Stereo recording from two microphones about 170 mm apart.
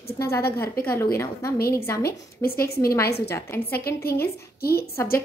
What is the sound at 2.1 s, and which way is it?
Speech, 60° left (ahead or behind).